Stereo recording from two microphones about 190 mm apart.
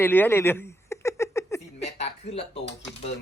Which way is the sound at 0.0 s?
10° left (ahead or behind).